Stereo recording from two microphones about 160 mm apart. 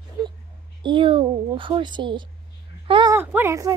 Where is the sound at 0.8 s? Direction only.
30° right (ahead or behind).